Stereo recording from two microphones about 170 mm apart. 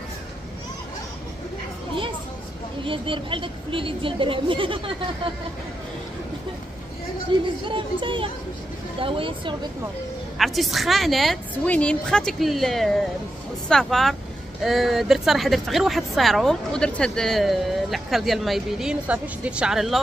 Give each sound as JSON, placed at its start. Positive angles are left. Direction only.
{"t": 2.8, "sound": "speech", "side_deg": -30}
{"t": 7.3, "sound": "speech", "side_deg": -30}
{"t": 10.3, "sound": "speech", "side_deg": 0}